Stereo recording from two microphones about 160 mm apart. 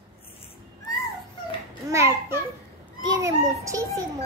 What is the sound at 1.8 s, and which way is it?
A child's voice, 15° right (ahead or behind).